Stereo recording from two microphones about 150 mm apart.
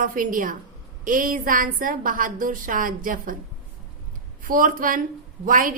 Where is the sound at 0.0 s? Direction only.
65° right (ahead or behind).